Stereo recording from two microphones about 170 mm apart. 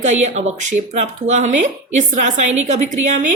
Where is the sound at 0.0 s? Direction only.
45° right (ahead or behind).